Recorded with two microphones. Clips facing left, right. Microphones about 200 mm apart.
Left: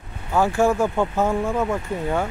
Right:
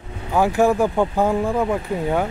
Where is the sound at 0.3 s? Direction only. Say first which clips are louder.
Right 2 dB; 15° right (ahead or behind).